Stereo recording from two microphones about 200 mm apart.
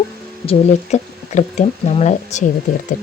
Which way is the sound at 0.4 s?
35° left (ahead or behind).